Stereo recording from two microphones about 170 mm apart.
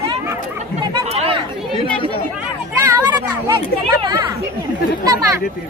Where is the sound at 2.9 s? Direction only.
25° right (ahead or behind).